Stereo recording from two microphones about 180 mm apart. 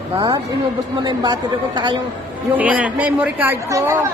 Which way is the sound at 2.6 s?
10° right (ahead or behind).